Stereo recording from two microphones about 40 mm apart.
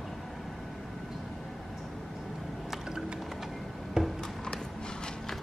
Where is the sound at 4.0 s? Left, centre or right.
Centre.